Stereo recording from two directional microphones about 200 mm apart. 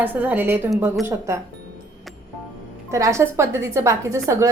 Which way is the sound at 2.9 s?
15° right (ahead or behind).